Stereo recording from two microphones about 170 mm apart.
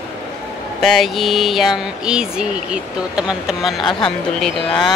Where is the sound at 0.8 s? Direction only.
Centre (ahead or behind).